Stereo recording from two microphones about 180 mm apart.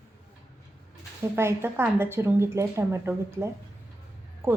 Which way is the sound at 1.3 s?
15° right (ahead or behind).